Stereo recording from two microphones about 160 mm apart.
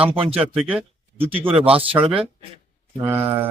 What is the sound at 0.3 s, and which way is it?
Speech, 5° right (ahead or behind).